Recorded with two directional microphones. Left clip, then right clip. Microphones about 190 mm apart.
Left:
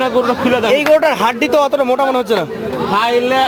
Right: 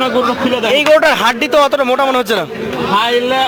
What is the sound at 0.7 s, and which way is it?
Speech, 5° left (ahead or behind).